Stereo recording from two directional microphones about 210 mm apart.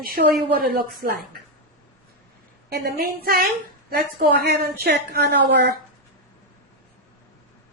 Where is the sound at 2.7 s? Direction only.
50° right (ahead or behind).